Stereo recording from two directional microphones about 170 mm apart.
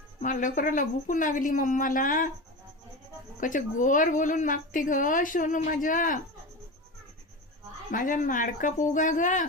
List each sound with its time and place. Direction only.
0.2 s a woman's voice: 50° left (ahead or behind)
3.4 s a woman's voice: 50° left (ahead or behind)
7.9 s a woman's voice: 50° left (ahead or behind)